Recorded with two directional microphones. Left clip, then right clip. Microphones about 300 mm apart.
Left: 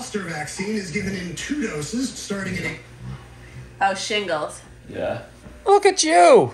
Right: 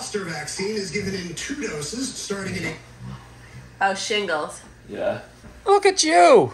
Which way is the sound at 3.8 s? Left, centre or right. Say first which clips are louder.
Left 1 dB; right.